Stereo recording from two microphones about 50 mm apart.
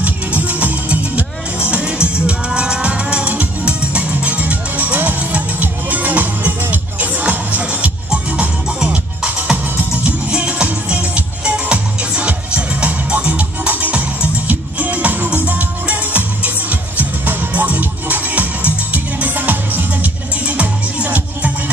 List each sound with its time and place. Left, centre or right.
0.0 s music: right
8.6 s music: centre
10.0 s music: right
20.4 s music: right